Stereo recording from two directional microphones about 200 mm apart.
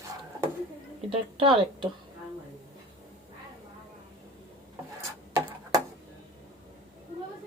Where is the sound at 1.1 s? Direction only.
25° right (ahead or behind).